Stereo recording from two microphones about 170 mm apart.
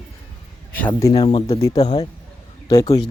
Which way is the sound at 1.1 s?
35° left (ahead or behind).